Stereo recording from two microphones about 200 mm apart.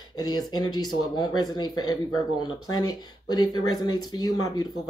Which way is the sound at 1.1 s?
20° left (ahead or behind).